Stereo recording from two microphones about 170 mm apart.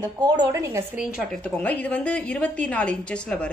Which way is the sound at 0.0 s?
20° right (ahead or behind).